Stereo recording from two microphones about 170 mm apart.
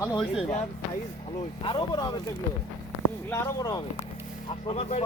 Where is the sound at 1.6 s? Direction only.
30° left (ahead or behind).